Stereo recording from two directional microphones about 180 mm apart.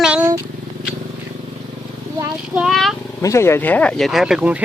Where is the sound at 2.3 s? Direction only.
5° right (ahead or behind).